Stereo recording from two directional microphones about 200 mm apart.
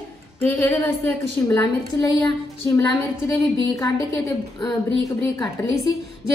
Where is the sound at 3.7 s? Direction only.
15° left (ahead or behind).